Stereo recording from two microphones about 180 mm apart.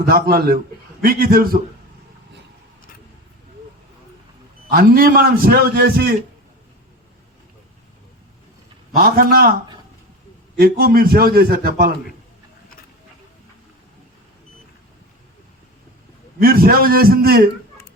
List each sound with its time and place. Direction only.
0.0 s a man's voice: 55° right (ahead or behind)
4.7 s a man's voice: 55° right (ahead or behind)
9.0 s a man's voice: 55° right (ahead or behind)
10.6 s a man's voice: 55° right (ahead or behind)
16.4 s a man's voice: 55° right (ahead or behind)